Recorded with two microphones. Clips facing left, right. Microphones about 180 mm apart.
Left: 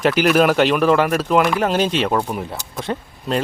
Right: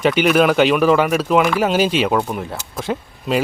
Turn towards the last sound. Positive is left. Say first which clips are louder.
# right 2 dB
turn(degrees=-5)  # may be behind; listen again after turning